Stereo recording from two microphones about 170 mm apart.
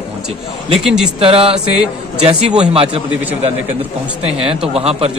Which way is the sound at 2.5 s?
35° right (ahead or behind).